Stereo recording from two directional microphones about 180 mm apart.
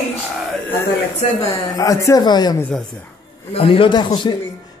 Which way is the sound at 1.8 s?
20° left (ahead or behind).